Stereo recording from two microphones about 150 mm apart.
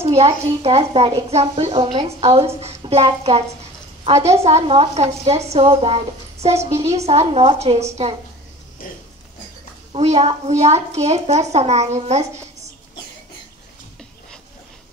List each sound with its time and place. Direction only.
0.0 s a woman's voice: 45° right (ahead or behind)
9.9 s a woman's voice: 45° right (ahead or behind)